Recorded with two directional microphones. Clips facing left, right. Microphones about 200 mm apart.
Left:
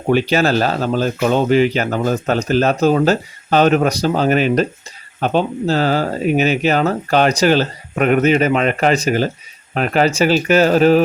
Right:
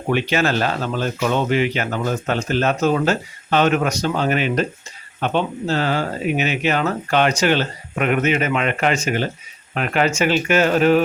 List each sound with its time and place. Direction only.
0.1 s speech: 35° left (ahead or behind)